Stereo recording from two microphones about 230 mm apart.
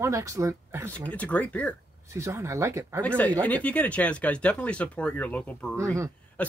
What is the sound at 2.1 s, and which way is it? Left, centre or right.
Speech, centre.